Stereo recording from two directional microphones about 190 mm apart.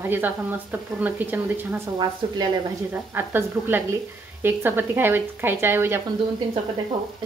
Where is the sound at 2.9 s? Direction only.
10° right (ahead or behind).